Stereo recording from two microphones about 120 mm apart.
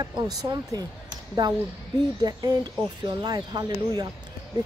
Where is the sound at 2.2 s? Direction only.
35° right (ahead or behind).